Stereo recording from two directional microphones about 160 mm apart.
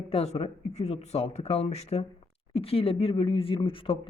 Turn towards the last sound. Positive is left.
turn(degrees=35)  # may be behind; listen again after turning